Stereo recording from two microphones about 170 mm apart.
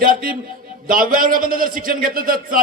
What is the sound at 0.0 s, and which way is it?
A man's voice, 55° right (ahead or behind).